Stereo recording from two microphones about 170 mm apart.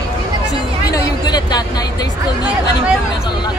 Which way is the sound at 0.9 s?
25° left (ahead or behind).